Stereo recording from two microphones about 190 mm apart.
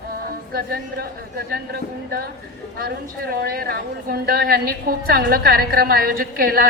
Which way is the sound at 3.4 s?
55° right (ahead or behind).